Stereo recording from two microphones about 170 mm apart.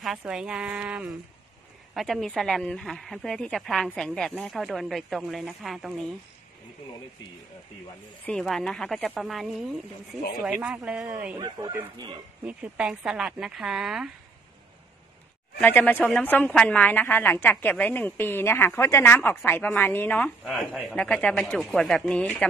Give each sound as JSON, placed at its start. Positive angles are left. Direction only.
{"t": 0.0, "sound": "speech", "side_deg": 0}
{"t": 8.3, "sound": "speech", "side_deg": 0}
{"t": 11.3, "sound": "speech", "side_deg": -25}
{"t": 12.4, "sound": "speech", "side_deg": -5}
{"t": 15.6, "sound": "a woman's voice", "side_deg": 10}